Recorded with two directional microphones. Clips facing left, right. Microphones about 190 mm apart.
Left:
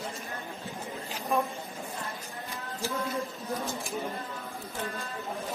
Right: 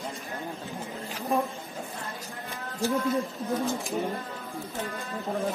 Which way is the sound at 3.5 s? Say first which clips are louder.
Right 6 dB; 15° right (ahead or behind).